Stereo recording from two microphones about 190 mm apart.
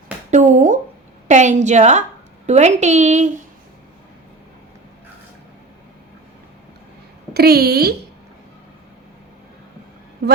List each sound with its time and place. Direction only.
0.3 s a woman's voice: 40° right (ahead or behind)
7.3 s a woman's voice: 55° right (ahead or behind)